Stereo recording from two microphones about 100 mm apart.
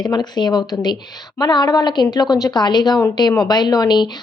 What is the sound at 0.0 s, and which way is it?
A woman's voice, 45° left (ahead or behind).